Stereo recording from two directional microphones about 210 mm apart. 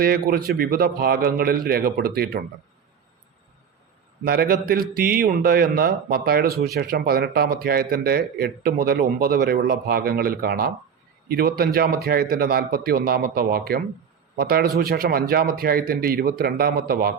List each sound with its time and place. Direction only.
0.0 s a man's voice: 45° right (ahead or behind)
4.2 s a man's voice: 45° right (ahead or behind)